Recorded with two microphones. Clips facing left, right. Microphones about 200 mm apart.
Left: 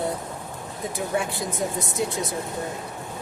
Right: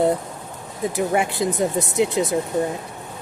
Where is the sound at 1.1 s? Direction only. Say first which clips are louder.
Right 3 dB; 70° right (ahead or behind).